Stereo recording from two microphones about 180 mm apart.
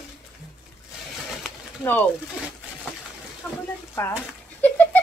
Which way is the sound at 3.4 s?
10° left (ahead or behind).